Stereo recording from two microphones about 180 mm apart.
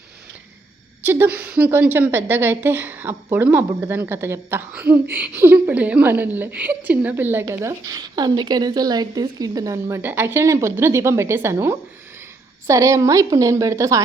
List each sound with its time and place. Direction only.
1.0 s a woman's voice: 10° right (ahead or behind)